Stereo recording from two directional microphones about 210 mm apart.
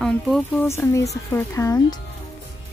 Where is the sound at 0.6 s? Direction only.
15° left (ahead or behind).